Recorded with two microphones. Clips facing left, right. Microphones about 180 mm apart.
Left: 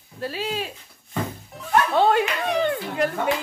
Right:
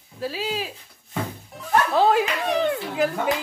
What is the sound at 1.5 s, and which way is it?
Bow-wow, centre (ahead or behind).